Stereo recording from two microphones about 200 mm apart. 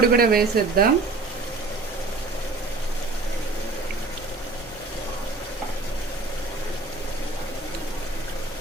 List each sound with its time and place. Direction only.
0.0 s speech: 50° right (ahead or behind)